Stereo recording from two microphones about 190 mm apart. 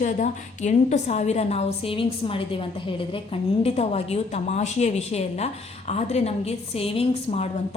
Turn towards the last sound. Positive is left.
turn(degrees=35)  # may be behind; listen again after turning